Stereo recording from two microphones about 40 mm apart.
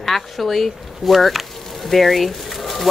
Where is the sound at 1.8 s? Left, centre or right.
Centre.